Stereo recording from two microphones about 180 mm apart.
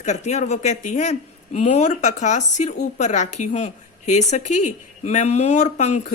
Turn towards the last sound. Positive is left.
turn(degrees=40)  # may be behind; listen again after turning